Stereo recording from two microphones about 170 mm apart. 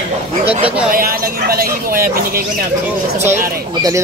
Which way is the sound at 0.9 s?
60° right (ahead or behind).